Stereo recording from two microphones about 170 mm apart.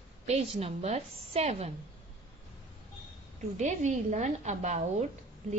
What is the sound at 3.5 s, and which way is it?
A woman's voice, 45° right (ahead or behind).